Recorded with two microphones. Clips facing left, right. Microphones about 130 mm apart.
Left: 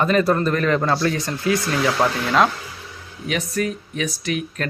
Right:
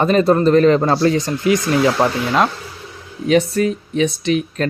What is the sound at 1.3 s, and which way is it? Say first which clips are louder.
Speech: right 5 dB; 20° right (ahead or behind).